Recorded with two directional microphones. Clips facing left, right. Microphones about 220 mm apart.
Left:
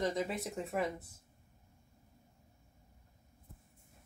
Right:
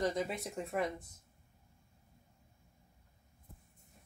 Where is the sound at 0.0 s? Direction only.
Centre (ahead or behind).